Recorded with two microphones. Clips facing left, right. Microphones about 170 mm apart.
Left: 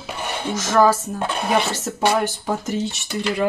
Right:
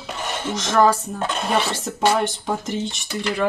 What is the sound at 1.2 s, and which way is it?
Speech, 10° left (ahead or behind).